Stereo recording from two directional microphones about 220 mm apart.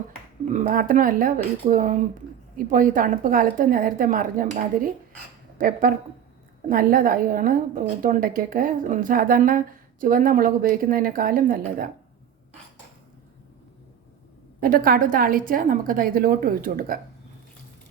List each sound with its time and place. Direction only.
0.5 s speech: 40° right (ahead or behind)
5.5 s speech: 40° right (ahead or behind)
14.6 s speech: 40° right (ahead or behind)